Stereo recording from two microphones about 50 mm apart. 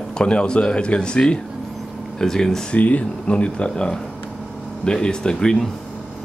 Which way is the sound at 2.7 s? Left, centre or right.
Left.